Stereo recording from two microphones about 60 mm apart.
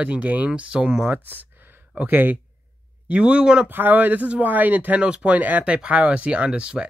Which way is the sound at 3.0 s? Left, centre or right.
Centre.